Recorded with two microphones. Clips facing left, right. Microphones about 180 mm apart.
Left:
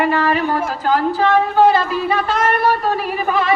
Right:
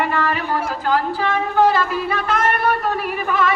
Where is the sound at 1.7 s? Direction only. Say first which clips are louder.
Left 3 dB; 25° left (ahead or behind).